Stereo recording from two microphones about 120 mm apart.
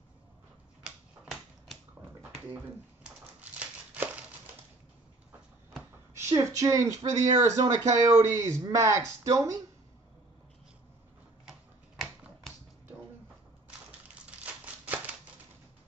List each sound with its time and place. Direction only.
0.8 s typewriter: 5° right (ahead or behind)
3.3 s crumpling: 15° right (ahead or behind)
6.1 s speech: 25° right (ahead or behind)
14.2 s a sound: 10° right (ahead or behind)